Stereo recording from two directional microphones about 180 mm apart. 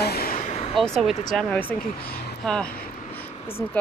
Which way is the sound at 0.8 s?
Centre (ahead or behind).